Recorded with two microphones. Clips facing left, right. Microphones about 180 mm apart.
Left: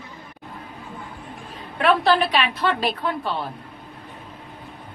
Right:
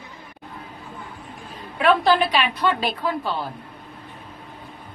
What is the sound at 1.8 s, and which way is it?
A woman's voice, centre (ahead or behind).